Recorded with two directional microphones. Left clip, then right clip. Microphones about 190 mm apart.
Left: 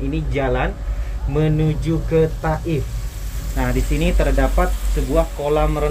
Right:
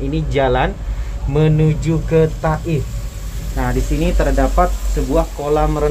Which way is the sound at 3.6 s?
Centre (ahead or behind).